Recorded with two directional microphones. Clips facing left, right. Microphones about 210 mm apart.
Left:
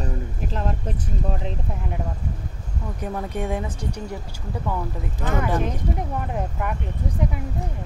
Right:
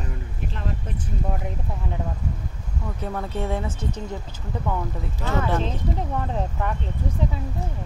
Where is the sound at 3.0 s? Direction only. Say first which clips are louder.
Left 1 dB; 15° left (ahead or behind).